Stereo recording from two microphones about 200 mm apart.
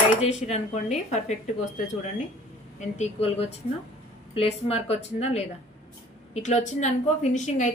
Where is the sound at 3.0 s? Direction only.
30° left (ahead or behind).